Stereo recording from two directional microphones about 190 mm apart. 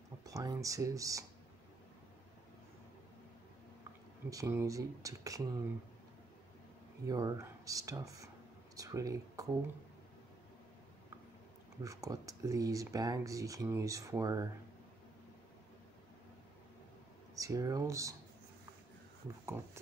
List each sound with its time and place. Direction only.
0.2 s speech: 20° right (ahead or behind)
4.3 s speech: 15° right (ahead or behind)
7.1 s speech: 20° right (ahead or behind)
11.8 s speech: 15° right (ahead or behind)
17.4 s speech: 15° right (ahead or behind)
19.4 s speech: 15° right (ahead or behind)